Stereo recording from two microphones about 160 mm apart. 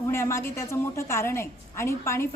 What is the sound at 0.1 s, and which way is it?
A woman's voice, 15° left (ahead or behind).